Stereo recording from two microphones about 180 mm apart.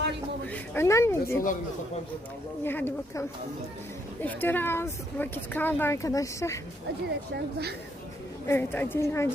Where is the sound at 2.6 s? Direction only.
10° left (ahead or behind).